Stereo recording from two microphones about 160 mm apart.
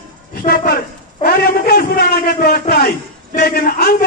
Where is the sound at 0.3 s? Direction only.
65° left (ahead or behind); by 2.0 s 80° left.